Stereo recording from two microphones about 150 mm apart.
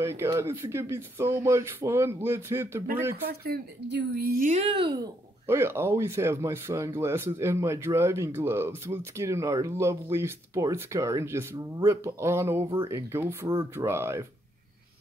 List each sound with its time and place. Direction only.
0.0 s speech: 15° right (ahead or behind)
3.3 s speech: 90° right; by 4.6 s 75° right (ahead or behind)
4.6 s speech: 35° right (ahead or behind); by 14.2 s 15° right (ahead or behind)